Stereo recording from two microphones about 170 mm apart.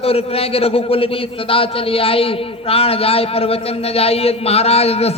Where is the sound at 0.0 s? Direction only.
35° left (ahead or behind).